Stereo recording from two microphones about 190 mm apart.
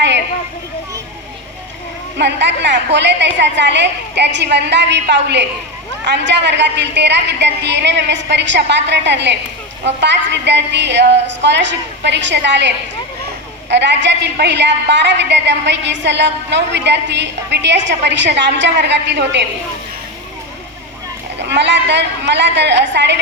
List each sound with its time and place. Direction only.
2.1 s a woman's voice: 65° right (ahead or behind)
21.3 s a woman's voice: 65° right (ahead or behind)